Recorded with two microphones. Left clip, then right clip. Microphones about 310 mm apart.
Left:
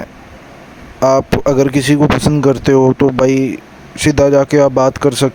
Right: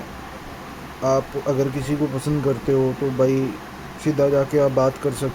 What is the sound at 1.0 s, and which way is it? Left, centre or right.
Speech, left.